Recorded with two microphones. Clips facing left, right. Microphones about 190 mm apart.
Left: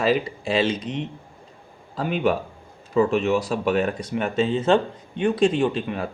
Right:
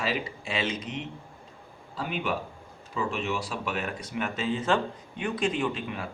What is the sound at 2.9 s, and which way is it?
Speech, 45° left (ahead or behind).